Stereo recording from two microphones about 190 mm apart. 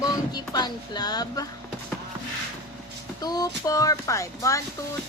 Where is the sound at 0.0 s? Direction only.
20° left (ahead or behind).